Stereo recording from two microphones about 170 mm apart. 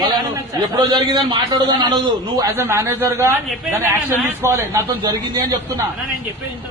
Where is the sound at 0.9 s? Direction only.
25° right (ahead or behind).